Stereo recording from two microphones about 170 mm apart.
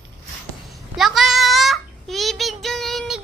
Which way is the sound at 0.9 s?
Centre (ahead or behind).